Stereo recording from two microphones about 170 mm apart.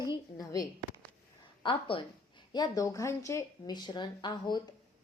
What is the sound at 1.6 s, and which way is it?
A woman's voice, 30° left (ahead or behind).